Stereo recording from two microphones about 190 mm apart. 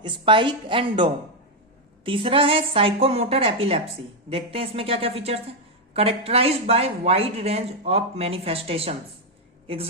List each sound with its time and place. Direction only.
0.0 s a woman's voice: 25° right (ahead or behind)